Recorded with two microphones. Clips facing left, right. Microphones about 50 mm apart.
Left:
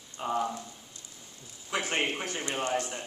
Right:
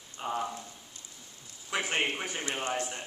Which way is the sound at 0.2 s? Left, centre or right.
Centre.